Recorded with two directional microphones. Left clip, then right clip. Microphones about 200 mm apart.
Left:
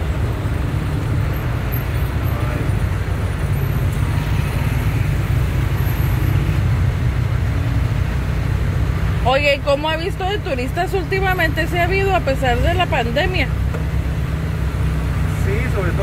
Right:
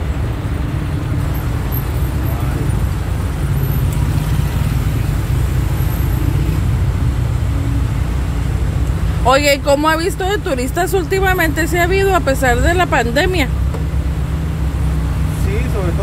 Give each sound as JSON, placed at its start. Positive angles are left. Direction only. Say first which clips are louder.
{"t": 9.2, "sound": "speech", "louder": "right 4 dB", "side_deg": -30}